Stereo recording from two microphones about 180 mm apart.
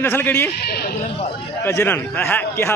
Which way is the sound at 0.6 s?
65° left (ahead or behind).